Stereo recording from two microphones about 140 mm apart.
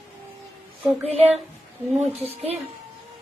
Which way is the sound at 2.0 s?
45° right (ahead or behind).